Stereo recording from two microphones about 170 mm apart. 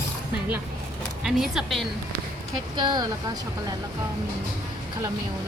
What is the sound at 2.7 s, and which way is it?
Speech, 25° right (ahead or behind).